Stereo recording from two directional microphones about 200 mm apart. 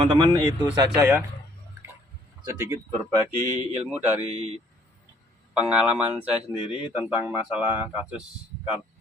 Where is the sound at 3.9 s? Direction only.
10° right (ahead or behind).